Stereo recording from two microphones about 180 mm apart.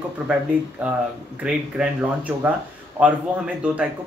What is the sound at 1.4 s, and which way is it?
Speech, 5° right (ahead or behind).